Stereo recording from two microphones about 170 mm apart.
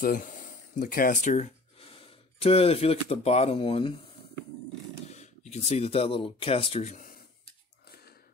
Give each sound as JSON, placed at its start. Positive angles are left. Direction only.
{"t": 0.0, "sound": "speech", "side_deg": 50}
{"t": 5.0, "sound": "speech", "side_deg": 40}